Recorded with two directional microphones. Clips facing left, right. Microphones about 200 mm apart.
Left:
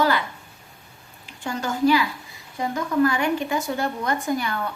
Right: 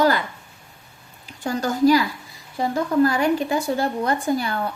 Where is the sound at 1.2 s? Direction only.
40° right (ahead or behind).